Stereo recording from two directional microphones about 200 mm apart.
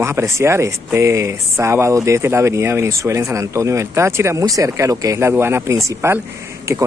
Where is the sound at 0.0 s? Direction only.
15° right (ahead or behind).